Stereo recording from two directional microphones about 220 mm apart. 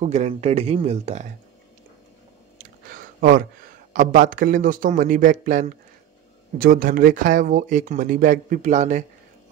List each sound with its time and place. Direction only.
0.0 s speech: 30° right (ahead or behind)
3.2 s speech: 40° right (ahead or behind)